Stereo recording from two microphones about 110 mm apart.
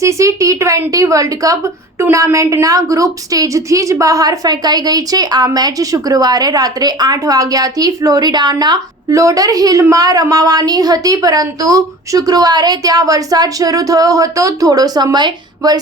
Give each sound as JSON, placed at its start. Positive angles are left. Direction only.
{"t": 0.0, "sound": "a woman's voice", "side_deg": -30}